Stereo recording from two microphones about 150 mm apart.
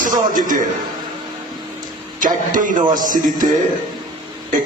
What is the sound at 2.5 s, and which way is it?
Speech, 60° right (ahead or behind).